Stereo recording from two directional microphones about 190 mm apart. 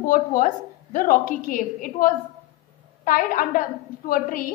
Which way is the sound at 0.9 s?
45° left (ahead or behind).